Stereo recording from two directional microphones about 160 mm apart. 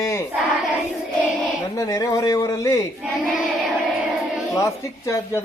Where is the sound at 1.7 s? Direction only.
20° left (ahead or behind).